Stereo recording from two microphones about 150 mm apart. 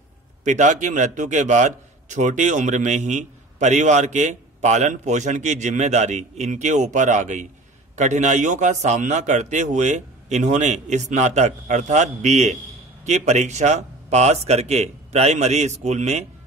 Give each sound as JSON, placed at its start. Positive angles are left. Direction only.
{"t": 0.4, "sound": "a man's voice", "side_deg": -50}